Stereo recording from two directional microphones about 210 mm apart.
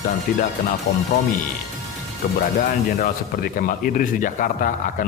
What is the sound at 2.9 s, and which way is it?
Speech, 45° left (ahead or behind).